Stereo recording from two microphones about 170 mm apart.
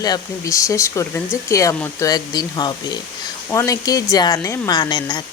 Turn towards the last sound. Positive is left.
turn(degrees=25)  # may be behind; listen again after turning